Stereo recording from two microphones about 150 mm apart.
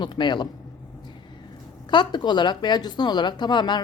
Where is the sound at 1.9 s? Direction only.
30° left (ahead or behind).